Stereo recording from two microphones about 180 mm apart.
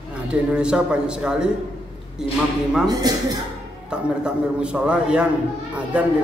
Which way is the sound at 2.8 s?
20° right (ahead or behind).